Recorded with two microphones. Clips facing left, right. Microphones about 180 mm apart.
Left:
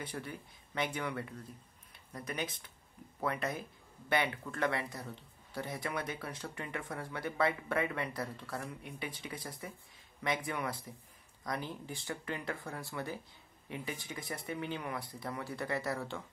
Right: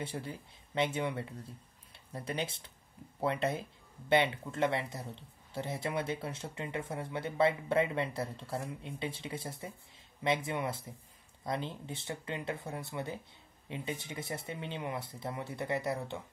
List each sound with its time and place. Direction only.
0.0 s speech: 25° right (ahead or behind)